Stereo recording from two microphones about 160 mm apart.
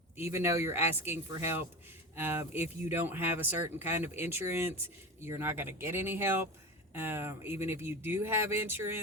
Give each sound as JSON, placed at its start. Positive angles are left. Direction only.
{"t": 0.2, "sound": "speech", "side_deg": -15}